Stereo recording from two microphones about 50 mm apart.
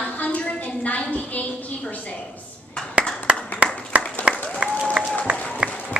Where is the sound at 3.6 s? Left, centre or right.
Right.